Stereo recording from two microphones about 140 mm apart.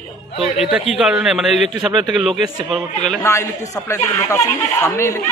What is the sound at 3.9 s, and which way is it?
Speech, 20° left (ahead or behind).